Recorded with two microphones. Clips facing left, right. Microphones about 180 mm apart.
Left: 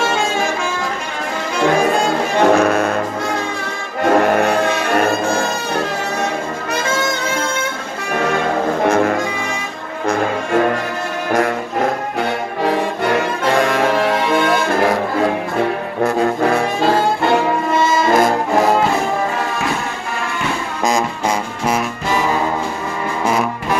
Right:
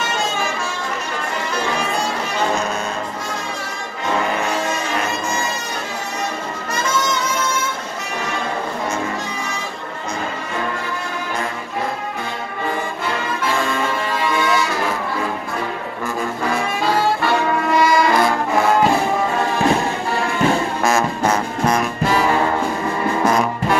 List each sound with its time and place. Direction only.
1.8 s music: 55° left (ahead or behind)
4.0 s music: 55° left (ahead or behind)
6.7 s brass instrument: 60° left (ahead or behind)
8.2 s music: 60° left (ahead or behind)
16.0 s brass instrument: 65° left (ahead or behind)
17.2 s brass instrument: 25° left (ahead or behind)
18.1 s brass instrument: 40° left (ahead or behind)
20.8 s music: 15° left (ahead or behind)